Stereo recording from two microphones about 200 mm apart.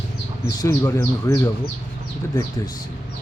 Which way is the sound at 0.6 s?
15° left (ahead or behind).